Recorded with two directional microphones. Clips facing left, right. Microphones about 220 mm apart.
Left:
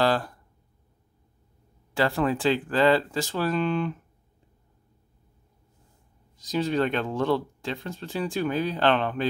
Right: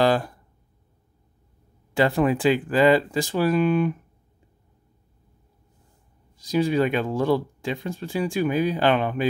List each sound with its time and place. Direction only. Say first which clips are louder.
0.0 s speech: right 3 dB; 15° right (ahead or behind)
2.0 s speech: right 4 dB; 20° right (ahead or behind)
6.3 s speech: right 4 dB; 10° right (ahead or behind)